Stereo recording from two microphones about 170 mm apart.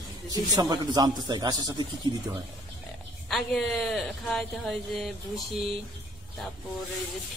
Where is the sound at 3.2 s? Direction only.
Centre (ahead or behind).